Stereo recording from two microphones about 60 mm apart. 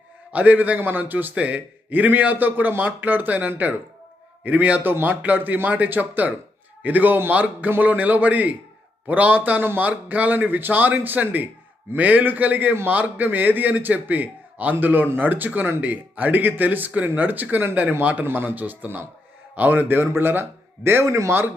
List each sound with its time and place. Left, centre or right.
0.3 s a man's voice: right
21.1 s a man's voice: right